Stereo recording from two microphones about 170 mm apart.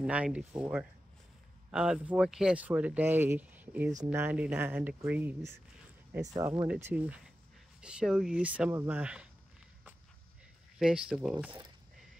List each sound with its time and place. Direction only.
0.0 s speech: 10° right (ahead or behind)
10.8 s speech: 5° right (ahead or behind)